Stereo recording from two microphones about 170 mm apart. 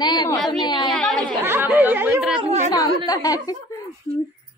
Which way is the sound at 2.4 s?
40° right (ahead or behind).